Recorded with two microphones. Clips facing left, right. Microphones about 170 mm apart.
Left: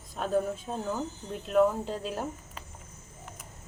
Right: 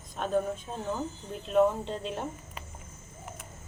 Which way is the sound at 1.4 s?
Centre (ahead or behind).